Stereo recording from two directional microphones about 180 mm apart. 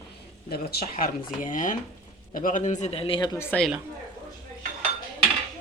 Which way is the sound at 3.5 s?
5° left (ahead or behind).